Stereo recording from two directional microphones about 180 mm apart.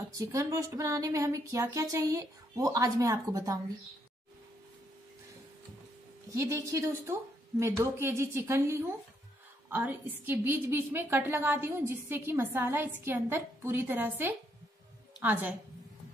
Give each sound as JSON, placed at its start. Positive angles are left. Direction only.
{"t": 0.2, "sound": "a woman's voice", "side_deg": -15}
{"t": 6.3, "sound": "a woman's voice", "side_deg": -15}